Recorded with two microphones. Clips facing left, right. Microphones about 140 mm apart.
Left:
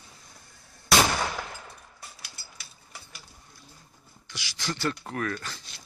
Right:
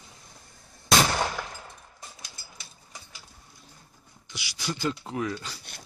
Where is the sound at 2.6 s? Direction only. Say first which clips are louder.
Even; 25° right (ahead or behind).